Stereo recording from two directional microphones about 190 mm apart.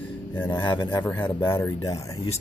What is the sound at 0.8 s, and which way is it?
Speech, 10° left (ahead or behind).